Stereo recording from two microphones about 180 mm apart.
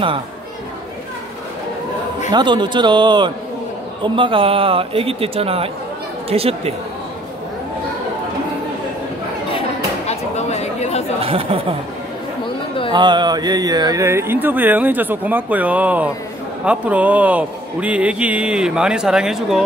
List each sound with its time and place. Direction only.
2.3 s a man's voice: 25° right (ahead or behind)
10.0 s chatter: 40° left (ahead or behind)
11.1 s speech: 30° right (ahead or behind)
12.9 s speech: 25° right (ahead or behind); by 19.6 s 5° right (ahead or behind)